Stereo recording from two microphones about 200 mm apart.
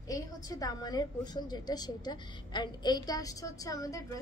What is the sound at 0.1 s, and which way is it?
A woman's voice, 20° left (ahead or behind).